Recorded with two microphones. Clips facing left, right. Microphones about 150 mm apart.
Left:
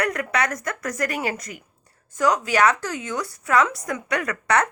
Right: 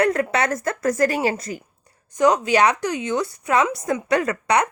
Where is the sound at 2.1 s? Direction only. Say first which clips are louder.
Right 4 dB; 20° right (ahead or behind).